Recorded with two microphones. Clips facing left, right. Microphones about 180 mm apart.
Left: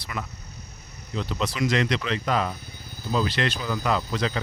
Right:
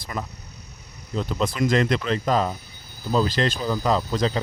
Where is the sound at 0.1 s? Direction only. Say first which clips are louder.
Right 3 dB; 40° right (ahead or behind).